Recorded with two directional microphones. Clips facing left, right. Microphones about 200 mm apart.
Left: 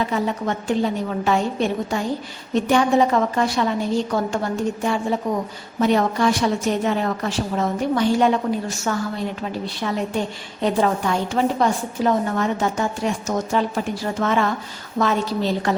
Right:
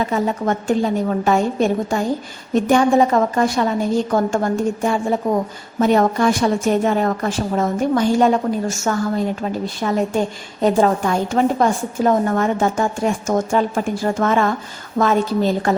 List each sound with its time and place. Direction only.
0.0 s a woman's voice: 45° right (ahead or behind)